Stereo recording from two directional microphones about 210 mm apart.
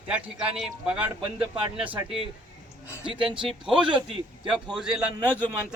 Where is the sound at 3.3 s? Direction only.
25° right (ahead or behind).